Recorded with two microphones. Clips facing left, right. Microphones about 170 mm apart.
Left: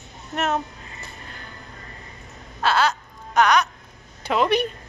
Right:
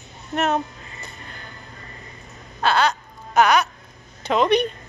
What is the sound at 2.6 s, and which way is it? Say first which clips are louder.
Baby cry: right 1 dB; centre (ahead or behind).